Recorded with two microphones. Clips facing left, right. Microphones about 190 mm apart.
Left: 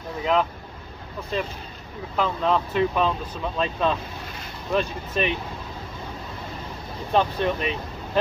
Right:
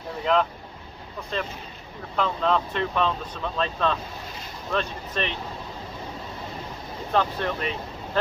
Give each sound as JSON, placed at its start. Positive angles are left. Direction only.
{"t": 0.2, "sound": "speech", "side_deg": 5}
{"t": 7.1, "sound": "speech", "side_deg": 15}